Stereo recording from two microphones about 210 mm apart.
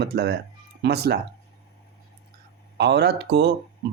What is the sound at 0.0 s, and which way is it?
Speech, 50° right (ahead or behind).